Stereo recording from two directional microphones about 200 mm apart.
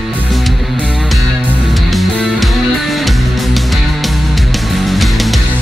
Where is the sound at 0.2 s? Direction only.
Centre (ahead or behind).